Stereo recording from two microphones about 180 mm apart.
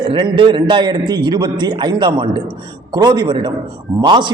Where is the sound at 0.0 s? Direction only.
30° right (ahead or behind).